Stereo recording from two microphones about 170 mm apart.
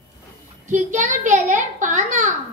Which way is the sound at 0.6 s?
45° right (ahead or behind).